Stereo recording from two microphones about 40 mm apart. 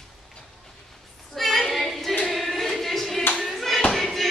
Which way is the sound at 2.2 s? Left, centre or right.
Centre.